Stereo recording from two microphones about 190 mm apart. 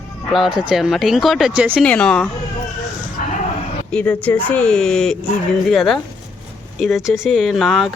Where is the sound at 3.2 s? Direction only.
45° left (ahead or behind).